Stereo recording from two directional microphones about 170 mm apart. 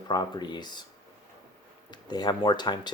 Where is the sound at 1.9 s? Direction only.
25° left (ahead or behind).